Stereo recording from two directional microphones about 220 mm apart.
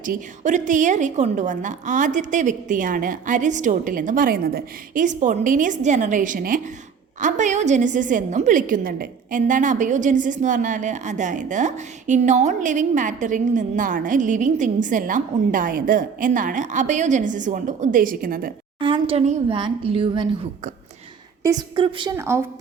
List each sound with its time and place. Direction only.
0.0 s a woman's voice: 35° right (ahead or behind)
18.8 s a woman's voice: 25° right (ahead or behind)